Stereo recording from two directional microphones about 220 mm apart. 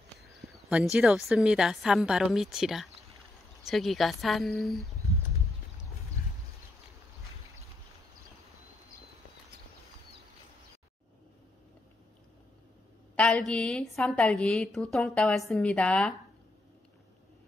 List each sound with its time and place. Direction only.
0.4 s a sound: 45° right (ahead or behind)
0.9 s a woman's voice: 5° right (ahead or behind)
13.1 s a woman's voice: centre (ahead or behind)